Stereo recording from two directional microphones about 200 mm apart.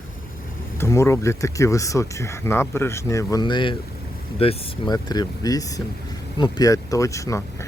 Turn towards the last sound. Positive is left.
turn(degrees=15)  # may be behind; listen again after turning